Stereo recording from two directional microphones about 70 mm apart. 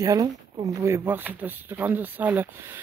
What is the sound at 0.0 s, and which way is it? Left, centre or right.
Speech, right.